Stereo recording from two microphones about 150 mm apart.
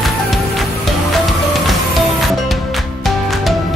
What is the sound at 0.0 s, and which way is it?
Music, centre (ahead or behind).